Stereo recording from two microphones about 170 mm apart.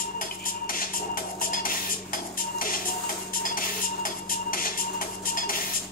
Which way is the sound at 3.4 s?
55° left (ahead or behind).